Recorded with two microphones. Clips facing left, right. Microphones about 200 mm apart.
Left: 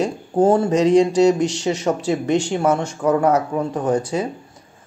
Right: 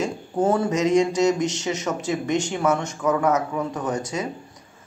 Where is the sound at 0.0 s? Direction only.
30° left (ahead or behind).